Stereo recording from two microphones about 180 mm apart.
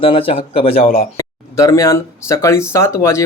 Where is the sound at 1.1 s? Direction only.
15° left (ahead or behind).